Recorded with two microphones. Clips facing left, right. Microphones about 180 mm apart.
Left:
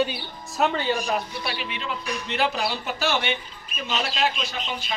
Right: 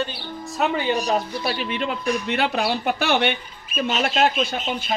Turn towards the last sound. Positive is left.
turn(degrees=-50)  # may be behind; listen again after turning